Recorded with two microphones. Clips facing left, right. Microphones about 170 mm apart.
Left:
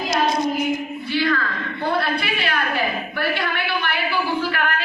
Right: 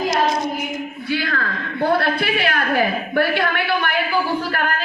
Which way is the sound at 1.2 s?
50° right (ahead or behind).